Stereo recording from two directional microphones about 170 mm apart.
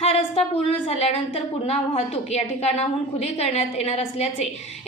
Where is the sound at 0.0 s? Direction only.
35° left (ahead or behind).